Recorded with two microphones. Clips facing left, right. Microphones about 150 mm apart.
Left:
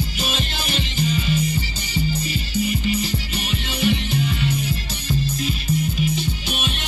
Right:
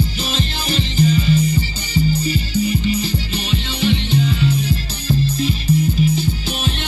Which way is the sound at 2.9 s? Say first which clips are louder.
Right 3 dB; 30° right (ahead or behind).